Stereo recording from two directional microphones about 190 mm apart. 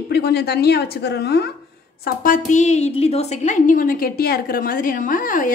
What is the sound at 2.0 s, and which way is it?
A woman's voice, 45° left (ahead or behind).